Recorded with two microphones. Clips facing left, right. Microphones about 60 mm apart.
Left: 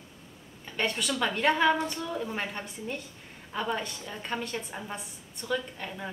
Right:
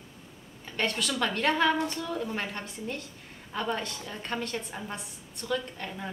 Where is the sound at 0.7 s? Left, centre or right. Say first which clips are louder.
Even; centre.